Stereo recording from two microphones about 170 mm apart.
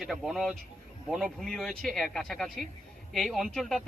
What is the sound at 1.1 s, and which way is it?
Speech, centre (ahead or behind).